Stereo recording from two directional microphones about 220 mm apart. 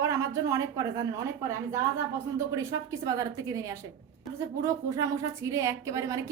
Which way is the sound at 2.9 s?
15° right (ahead or behind).